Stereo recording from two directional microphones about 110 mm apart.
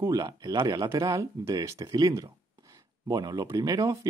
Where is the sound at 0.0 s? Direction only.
35° right (ahead or behind).